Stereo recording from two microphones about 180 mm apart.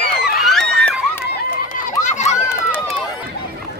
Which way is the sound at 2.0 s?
40° left (ahead or behind).